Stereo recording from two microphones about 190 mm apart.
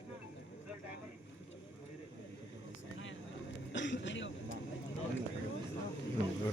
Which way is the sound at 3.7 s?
70° left (ahead or behind).